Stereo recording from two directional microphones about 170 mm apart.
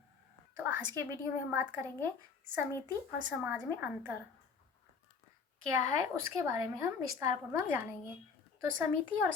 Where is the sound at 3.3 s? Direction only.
10° right (ahead or behind).